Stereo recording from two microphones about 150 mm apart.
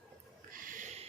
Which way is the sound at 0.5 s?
65° right (ahead or behind).